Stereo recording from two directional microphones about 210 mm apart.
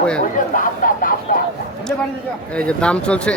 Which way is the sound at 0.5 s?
40° left (ahead or behind).